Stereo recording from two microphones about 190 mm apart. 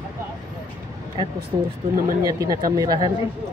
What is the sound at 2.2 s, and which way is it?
Speech, 20° right (ahead or behind).